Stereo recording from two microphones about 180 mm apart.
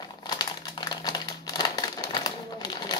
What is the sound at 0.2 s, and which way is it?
Crumpling, 20° left (ahead or behind).